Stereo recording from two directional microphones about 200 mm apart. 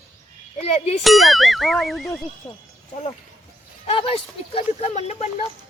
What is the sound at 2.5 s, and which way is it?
Speech, 15° left (ahead or behind).